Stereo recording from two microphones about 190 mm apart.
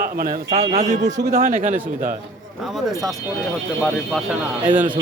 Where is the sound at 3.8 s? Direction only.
Centre (ahead or behind).